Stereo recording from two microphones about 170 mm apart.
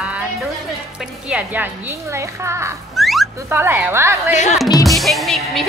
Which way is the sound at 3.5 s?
15° right (ahead or behind).